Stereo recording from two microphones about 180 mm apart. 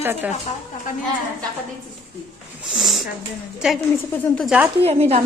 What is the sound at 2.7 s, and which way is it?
Speech, centre (ahead or behind).